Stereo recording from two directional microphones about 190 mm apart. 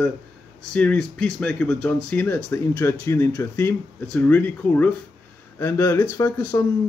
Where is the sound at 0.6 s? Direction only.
5° left (ahead or behind).